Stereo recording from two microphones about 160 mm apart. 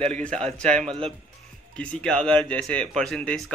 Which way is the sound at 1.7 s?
5° left (ahead or behind).